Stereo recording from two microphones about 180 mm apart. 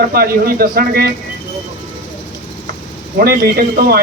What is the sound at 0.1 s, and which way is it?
Speech, 55° right (ahead or behind).